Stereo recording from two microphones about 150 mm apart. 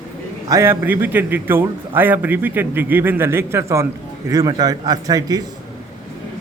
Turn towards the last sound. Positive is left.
turn(degrees=-25)  # may be behind; listen again after turning